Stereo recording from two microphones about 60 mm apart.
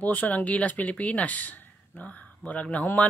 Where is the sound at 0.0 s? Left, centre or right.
Left.